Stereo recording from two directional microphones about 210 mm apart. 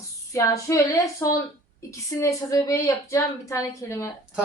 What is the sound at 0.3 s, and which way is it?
A woman's voice, 15° left (ahead or behind).